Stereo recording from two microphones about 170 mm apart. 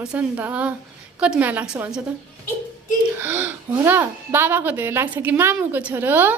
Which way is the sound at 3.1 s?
10° right (ahead or behind).